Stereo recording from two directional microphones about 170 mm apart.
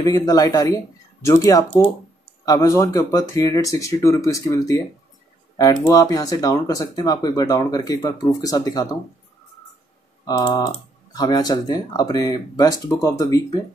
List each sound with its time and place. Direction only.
0.0 s speech: 20° left (ahead or behind)
10.2 s speech: 20° left (ahead or behind)